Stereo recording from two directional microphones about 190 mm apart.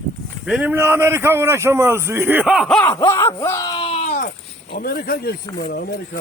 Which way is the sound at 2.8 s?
15° left (ahead or behind).